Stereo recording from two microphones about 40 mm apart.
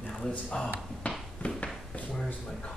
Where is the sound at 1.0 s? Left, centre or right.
Left.